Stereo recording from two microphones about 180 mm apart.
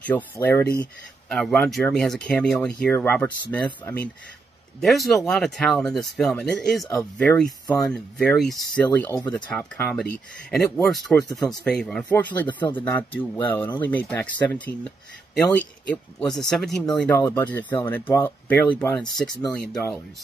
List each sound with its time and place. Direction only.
0.0 s speech: 10° left (ahead or behind)